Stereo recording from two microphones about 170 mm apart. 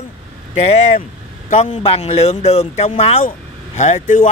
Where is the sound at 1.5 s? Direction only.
45° left (ahead or behind).